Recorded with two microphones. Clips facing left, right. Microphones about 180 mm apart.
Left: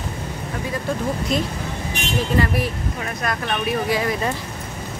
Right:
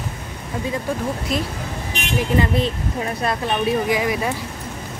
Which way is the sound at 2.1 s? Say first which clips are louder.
Right 2 dB; 20° right (ahead or behind).